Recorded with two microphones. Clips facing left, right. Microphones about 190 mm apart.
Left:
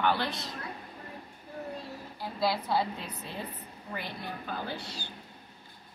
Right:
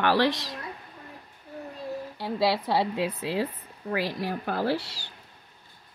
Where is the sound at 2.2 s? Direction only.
75° right (ahead or behind).